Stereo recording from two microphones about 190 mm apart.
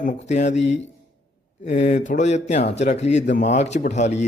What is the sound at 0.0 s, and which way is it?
Speech, 40° left (ahead or behind).